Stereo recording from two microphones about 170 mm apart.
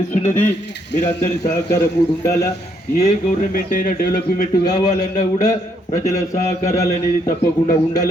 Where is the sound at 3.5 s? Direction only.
55° left (ahead or behind).